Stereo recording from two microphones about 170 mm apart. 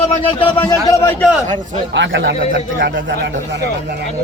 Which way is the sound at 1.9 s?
90° right.